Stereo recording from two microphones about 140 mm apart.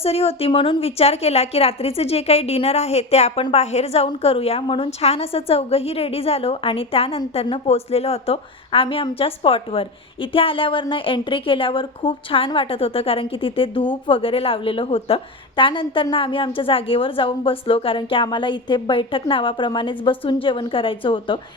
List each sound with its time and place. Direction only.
0.0 s a woman's voice: 45° left (ahead or behind)